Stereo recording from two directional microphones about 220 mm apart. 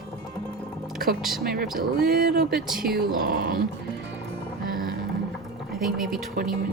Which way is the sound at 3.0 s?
45° right (ahead or behind).